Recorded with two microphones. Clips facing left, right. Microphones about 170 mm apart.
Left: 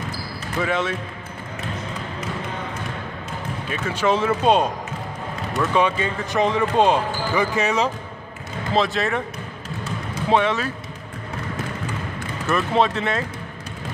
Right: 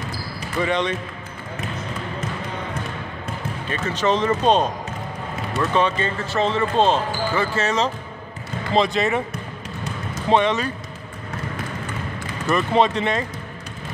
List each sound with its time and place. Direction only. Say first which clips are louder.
0.6 s speech: right 1 dB; 5° left (ahead or behind)
3.6 s speech: even; 10° left (ahead or behind)
8.7 s speech: right 2 dB; centre (ahead or behind)
10.3 s speech: right 1 dB; 5° left (ahead or behind)
12.4 s speech: right 1 dB; centre (ahead or behind)